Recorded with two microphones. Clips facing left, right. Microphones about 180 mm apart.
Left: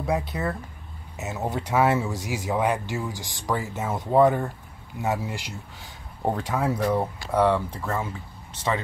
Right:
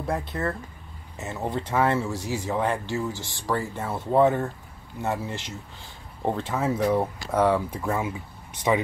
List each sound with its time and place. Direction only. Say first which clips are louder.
0.3 s speech: even; 10° left (ahead or behind); by 8.8 s 15° right (ahead or behind)